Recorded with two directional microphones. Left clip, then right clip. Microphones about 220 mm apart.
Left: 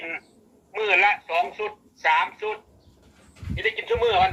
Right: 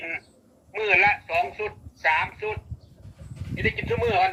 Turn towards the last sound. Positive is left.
turn(degrees=15)  # may be behind; listen again after turning